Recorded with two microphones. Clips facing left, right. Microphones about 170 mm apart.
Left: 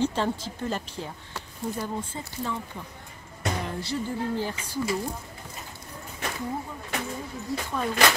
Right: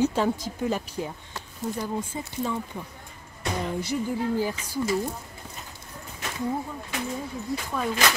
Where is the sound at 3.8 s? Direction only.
10° right (ahead or behind).